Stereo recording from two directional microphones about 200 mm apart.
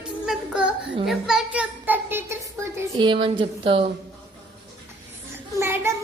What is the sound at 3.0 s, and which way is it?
Speech, 25° right (ahead or behind).